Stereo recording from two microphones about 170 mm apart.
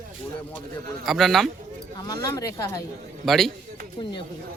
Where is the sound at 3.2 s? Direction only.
Centre (ahead or behind).